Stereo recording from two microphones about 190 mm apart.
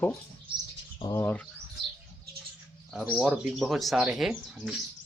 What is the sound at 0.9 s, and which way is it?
Speech, 25° left (ahead or behind).